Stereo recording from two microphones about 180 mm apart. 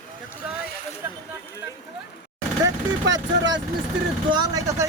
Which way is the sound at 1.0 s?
10° right (ahead or behind).